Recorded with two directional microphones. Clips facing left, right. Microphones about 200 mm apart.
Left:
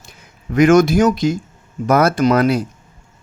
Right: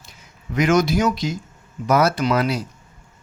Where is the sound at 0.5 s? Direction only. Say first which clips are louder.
Left 7 dB; 50° left (ahead or behind).